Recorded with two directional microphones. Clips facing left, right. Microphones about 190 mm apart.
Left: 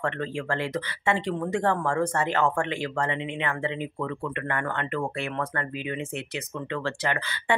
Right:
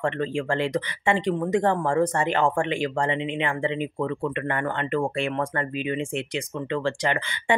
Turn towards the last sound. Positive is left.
turn(degrees=-20)  # may be behind; listen again after turning